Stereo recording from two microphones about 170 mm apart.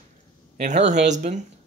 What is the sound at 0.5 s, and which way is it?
Speech, 45° right (ahead or behind).